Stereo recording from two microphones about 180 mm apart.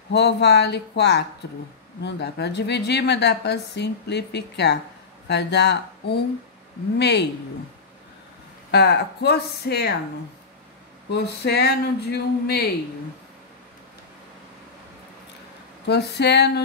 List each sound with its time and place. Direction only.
0.1 s a woman's voice: 70° left (ahead or behind)
8.7 s speech: 65° left (ahead or behind)
11.1 s speech: 65° left (ahead or behind)
15.9 s a woman's voice: 70° left (ahead or behind)